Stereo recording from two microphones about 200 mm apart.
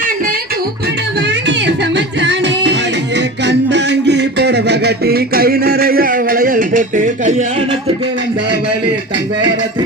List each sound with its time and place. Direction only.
1.3 s music: 60° right (ahead or behind); by 7.8 s 35° right (ahead or behind)